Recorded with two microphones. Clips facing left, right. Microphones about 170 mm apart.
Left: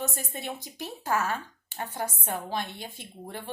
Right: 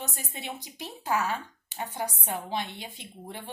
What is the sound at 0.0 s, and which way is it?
A woman's voice, 15° right (ahead or behind).